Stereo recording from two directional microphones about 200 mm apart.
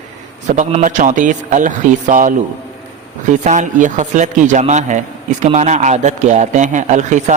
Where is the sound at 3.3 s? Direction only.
40° right (ahead or behind).